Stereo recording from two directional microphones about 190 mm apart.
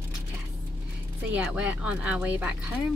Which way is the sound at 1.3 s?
5° right (ahead or behind).